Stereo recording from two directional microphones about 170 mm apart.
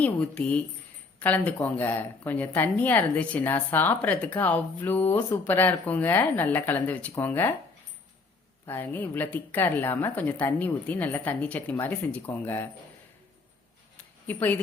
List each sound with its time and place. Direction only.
0.0 s a woman's voice: 5° left (ahead or behind)
8.6 s a woman's voice: 10° left (ahead or behind)
14.3 s a woman's voice: 10° left (ahead or behind)